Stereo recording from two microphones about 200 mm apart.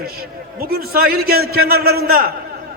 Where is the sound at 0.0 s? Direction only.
50° right (ahead or behind).